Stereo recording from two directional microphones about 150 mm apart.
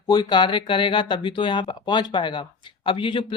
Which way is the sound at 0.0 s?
30° left (ahead or behind).